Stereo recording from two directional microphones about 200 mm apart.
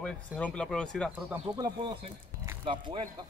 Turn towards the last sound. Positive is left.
turn(degrees=-25)  # may be behind; listen again after turning